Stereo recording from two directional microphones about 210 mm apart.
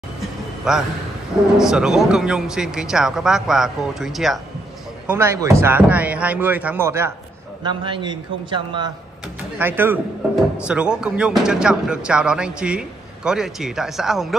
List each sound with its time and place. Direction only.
0.7 s a man's voice: centre (ahead or behind); by 8.9 s 20° right (ahead or behind)
9.6 s speech: 10° right (ahead or behind)